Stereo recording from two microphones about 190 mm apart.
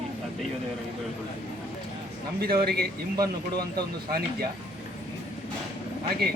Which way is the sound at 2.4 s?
55° right (ahead or behind).